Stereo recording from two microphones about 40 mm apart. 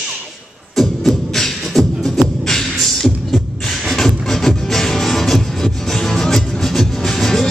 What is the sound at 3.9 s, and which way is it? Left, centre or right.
Music, centre.